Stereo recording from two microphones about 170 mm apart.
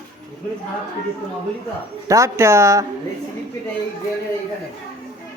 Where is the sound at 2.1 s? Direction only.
15° right (ahead or behind).